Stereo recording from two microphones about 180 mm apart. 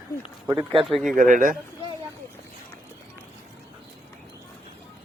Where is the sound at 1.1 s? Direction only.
45° right (ahead or behind).